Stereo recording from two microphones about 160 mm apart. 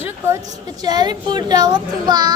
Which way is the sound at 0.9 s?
25° right (ahead or behind).